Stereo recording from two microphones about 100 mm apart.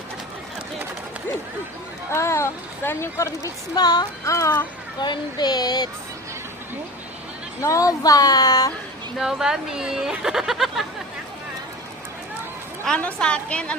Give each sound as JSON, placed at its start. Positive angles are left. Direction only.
{"t": 2.1, "sound": "a woman's voice", "side_deg": 30}
{"t": 4.9, "sound": "speech", "side_deg": 45}
{"t": 7.6, "sound": "speech", "side_deg": 35}
{"t": 9.1, "sound": "speech", "side_deg": -5}
{"t": 12.8, "sound": "a woman's voice", "side_deg": 10}